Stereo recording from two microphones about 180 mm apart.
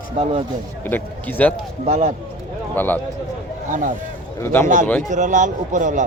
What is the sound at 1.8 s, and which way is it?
Speech, 40° right (ahead or behind).